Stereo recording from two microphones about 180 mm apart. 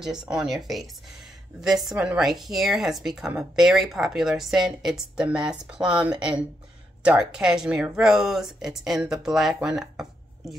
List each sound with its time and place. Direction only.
0.0 s speech: 5° right (ahead or behind)